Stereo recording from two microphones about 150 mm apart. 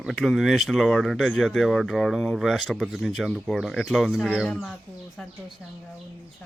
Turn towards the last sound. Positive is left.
turn(degrees=5)  # may be behind; listen again after turning